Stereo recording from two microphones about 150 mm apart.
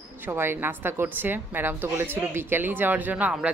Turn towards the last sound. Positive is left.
turn(degrees=-10)  # may be behind; listen again after turning